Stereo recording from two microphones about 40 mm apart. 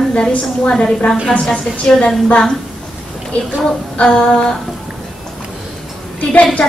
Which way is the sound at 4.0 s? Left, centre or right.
Left.